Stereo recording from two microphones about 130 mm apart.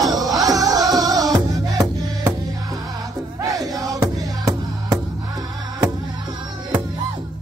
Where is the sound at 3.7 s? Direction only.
25° right (ahead or behind).